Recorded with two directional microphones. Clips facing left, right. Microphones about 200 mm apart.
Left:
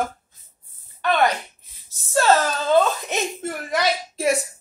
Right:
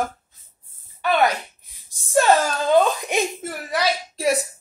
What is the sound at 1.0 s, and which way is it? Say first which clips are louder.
Speech: even; 10° right (ahead or behind).